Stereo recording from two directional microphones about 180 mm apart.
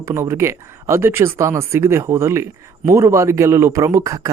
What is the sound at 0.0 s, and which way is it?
Speech, 15° right (ahead or behind).